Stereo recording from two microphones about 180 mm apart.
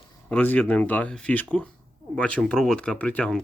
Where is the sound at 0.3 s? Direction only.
10° left (ahead or behind).